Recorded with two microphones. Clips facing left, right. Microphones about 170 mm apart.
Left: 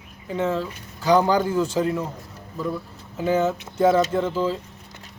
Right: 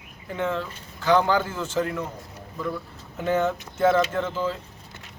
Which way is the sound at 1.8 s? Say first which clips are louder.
Left 5 dB; 25° left (ahead or behind).